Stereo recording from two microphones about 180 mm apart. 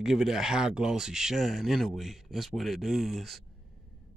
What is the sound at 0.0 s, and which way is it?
Speech, centre (ahead or behind).